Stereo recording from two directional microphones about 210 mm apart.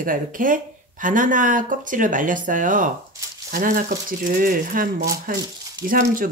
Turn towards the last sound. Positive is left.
turn(degrees=-40)  # may be behind; listen again after turning